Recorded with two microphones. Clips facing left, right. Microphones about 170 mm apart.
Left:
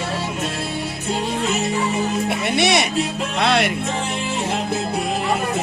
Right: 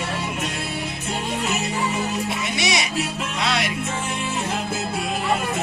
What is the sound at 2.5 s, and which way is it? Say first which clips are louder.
Music: left 6 dB; 60° left (ahead or behind).